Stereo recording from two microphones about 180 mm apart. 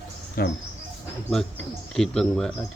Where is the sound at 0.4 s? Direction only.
55° left (ahead or behind).